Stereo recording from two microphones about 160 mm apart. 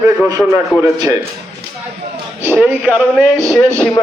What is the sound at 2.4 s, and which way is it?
Speech, 10° right (ahead or behind).